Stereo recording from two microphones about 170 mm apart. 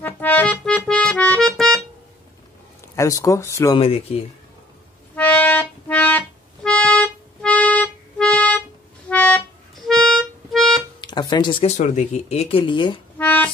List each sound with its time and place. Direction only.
0.0 s accordion: 10° left (ahead or behind)
3.0 s speech: 20° left (ahead or behind)
3.7 s speech: 35° left (ahead or behind)
5.1 s music: 10° left (ahead or behind)
11.0 s music: 25° left (ahead or behind)
11.6 s speech: 45° left (ahead or behind)
13.2 s music: 10° left (ahead or behind)